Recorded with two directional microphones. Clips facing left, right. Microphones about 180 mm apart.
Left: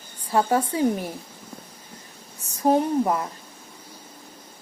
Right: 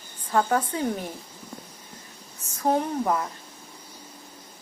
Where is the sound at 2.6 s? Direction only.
15° left (ahead or behind).